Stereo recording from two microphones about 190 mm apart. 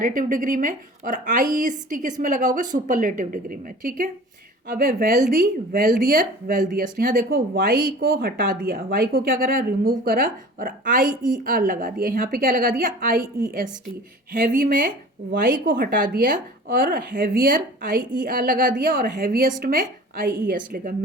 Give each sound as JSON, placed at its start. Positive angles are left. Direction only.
{"t": 0.0, "sound": "speech", "side_deg": -45}
{"t": 14.4, "sound": "speech", "side_deg": -45}
{"t": 20.1, "sound": "a woman's voice", "side_deg": -60}
{"t": 20.5, "sound": "speech", "side_deg": -50}